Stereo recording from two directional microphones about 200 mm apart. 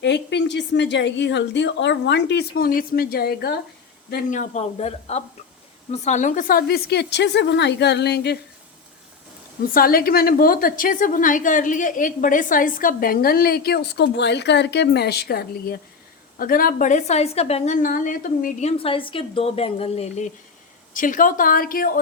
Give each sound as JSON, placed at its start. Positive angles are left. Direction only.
{"t": 0.0, "sound": "a woman's voice", "side_deg": 60}
{"t": 4.1, "sound": "a woman's voice", "side_deg": 40}
{"t": 9.7, "sound": "a woman's voice", "side_deg": 45}
{"t": 18.8, "sound": "a woman's voice", "side_deg": 25}